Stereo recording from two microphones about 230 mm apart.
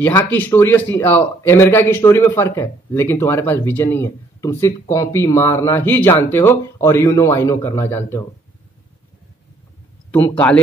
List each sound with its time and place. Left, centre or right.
0.0 s a man's voice: centre
10.1 s a man's voice: centre